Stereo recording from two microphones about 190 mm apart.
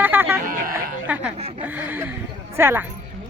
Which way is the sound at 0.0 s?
10° right (ahead or behind).